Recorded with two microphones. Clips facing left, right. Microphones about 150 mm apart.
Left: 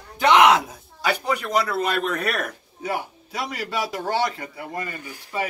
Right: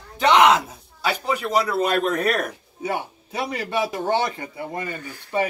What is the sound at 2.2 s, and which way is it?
A man's voice, 35° right (ahead or behind).